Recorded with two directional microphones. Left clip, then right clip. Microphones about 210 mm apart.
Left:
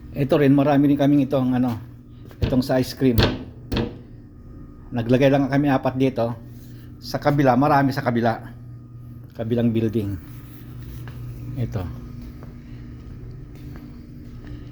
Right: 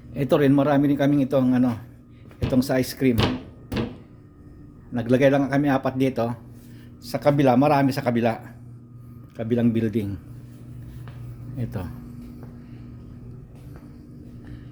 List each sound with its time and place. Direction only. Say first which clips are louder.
0.1 s a man's voice: left 1 dB; 5° right (ahead or behind)
4.9 s a man's voice: left 1 dB; centre (ahead or behind)
11.5 s a man's voice: left 2 dB; 5° right (ahead or behind)